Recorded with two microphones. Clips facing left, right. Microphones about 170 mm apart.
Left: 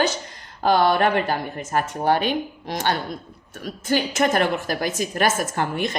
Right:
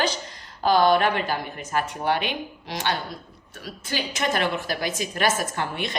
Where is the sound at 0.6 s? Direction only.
60° left (ahead or behind).